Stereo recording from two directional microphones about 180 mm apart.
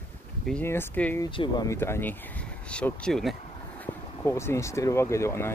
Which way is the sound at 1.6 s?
15° left (ahead or behind).